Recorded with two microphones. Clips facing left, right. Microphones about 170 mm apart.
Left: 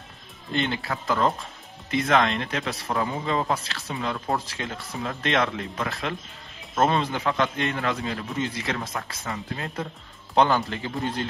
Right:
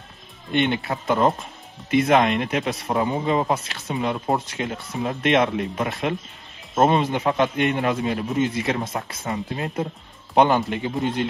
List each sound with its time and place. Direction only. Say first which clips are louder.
0.7 s a man's voice: right 4 dB; 25° right (ahead or behind)